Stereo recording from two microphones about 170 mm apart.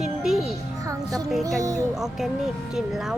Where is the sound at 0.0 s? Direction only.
5° right (ahead or behind).